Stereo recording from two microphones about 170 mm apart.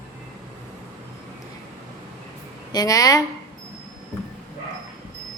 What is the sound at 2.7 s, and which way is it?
Speech, 20° left (ahead or behind).